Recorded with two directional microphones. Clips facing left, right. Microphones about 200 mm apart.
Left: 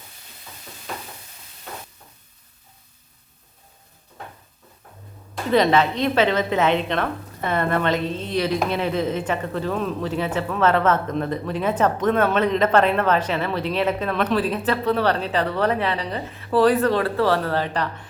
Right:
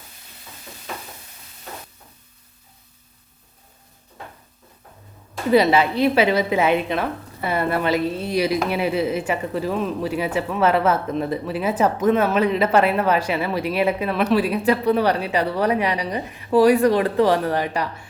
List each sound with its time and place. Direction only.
5.5 s speech: 10° right (ahead or behind)